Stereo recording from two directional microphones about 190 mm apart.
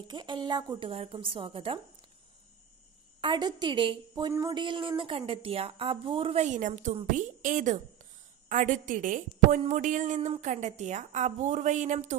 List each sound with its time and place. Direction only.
0.1 s a woman's voice: 25° right (ahead or behind)
3.2 s a woman's voice: 25° right (ahead or behind); by 12.2 s 40° right (ahead or behind)